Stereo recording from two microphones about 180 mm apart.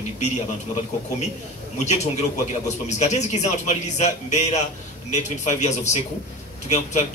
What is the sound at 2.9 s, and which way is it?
A man's voice, 40° left (ahead or behind).